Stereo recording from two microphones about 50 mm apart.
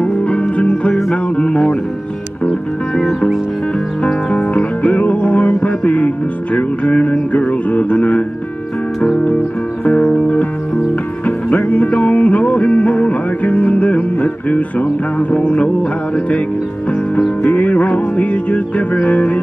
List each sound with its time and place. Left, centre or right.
0.0 s music: left
4.0 s music: left
17.4 s music: left